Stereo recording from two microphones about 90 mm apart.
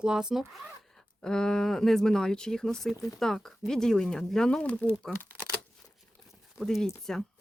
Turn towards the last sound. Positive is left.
turn(degrees=5)  # may be behind; listen again after turning